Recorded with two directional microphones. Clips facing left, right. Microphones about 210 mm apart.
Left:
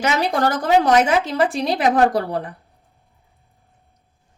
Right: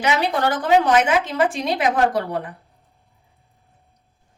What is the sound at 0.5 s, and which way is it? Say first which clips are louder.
Speech: even; 40° left (ahead or behind).